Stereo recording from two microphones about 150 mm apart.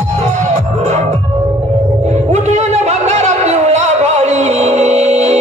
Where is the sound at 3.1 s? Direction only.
50° right (ahead or behind).